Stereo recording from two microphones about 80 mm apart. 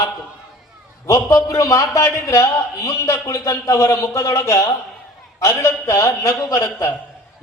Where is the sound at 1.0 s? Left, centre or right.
Left.